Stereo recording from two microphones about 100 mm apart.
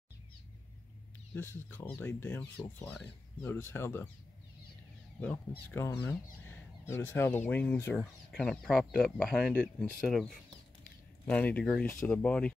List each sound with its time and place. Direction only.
1.3 s speech: 20° left (ahead or behind)
5.2 s speech: 15° left (ahead or behind)
8.0 s speech: centre (ahead or behind)